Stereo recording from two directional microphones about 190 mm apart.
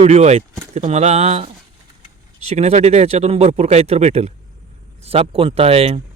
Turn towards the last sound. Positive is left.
turn(degrees=-30)  # may be behind; listen again after turning